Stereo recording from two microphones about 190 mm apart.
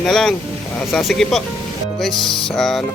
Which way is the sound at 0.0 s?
Centre (ahead or behind).